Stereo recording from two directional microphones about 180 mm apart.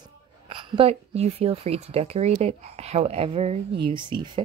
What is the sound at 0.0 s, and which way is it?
A woman's voice, 30° right (ahead or behind).